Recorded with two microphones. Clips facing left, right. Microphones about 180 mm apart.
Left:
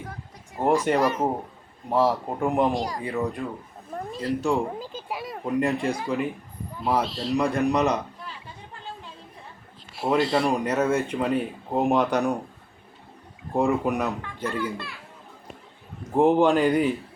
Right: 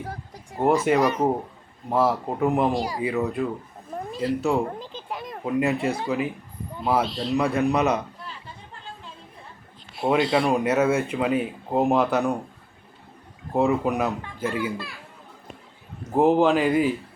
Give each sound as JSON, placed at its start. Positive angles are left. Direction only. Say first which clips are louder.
{"t": 0.0, "sound": "a sound", "louder": "right 4 dB", "side_deg": -35}
{"t": 0.6, "sound": "speech", "louder": "right 2 dB", "side_deg": -5}
{"t": 4.9, "sound": "a sound", "louder": "left 1 dB", "side_deg": 5}
{"t": 6.8, "sound": "speech", "louder": "right 1 dB", "side_deg": 0}
{"t": 9.9, "sound": "speech", "louder": "right 1 dB", "side_deg": 0}
{"t": 13.5, "sound": "a child's voice", "louder": "right 1 dB", "side_deg": 0}
{"t": 16.1, "sound": "speech", "louder": "even", "side_deg": -5}